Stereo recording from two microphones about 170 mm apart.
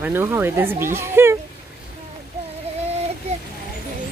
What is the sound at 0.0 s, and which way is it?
Speech, 15° right (ahead or behind).